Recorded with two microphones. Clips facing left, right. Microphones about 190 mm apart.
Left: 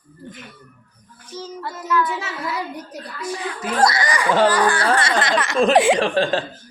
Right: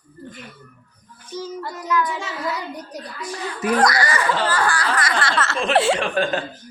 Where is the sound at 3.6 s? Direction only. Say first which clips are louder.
Right 1 dB; 25° left (ahead or behind).